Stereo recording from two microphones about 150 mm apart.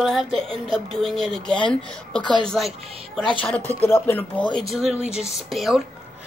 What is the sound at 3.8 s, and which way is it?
Speech, 15° left (ahead or behind).